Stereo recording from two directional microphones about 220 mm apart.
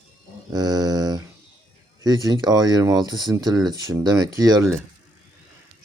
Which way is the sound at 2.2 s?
15° right (ahead or behind).